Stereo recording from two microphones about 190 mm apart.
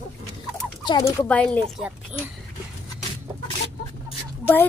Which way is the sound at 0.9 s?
20° left (ahead or behind).